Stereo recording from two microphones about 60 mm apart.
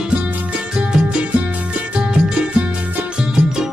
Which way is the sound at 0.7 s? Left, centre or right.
Centre.